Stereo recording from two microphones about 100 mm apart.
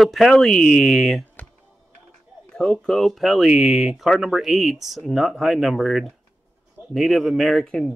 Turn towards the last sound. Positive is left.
turn(degrees=5)  # may be behind; listen again after turning